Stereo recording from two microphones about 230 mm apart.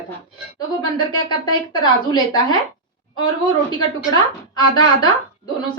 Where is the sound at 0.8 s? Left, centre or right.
Centre.